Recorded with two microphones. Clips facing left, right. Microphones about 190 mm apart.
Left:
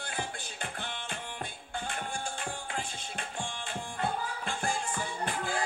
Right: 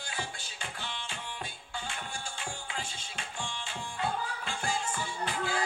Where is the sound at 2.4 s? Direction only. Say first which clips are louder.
Left 2 dB; 50° left (ahead or behind).